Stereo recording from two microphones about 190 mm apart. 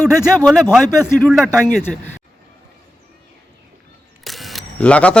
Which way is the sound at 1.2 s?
5° left (ahead or behind).